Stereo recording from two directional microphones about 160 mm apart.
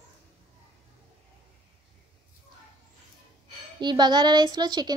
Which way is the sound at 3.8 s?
30° right (ahead or behind).